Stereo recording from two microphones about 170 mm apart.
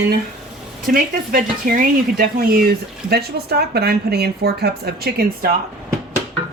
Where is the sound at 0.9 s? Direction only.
60° right (ahead or behind).